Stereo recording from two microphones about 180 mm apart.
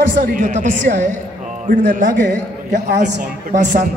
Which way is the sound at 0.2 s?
45° right (ahead or behind).